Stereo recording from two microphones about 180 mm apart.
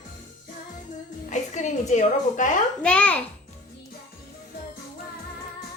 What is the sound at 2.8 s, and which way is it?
Speech, 5° left (ahead or behind).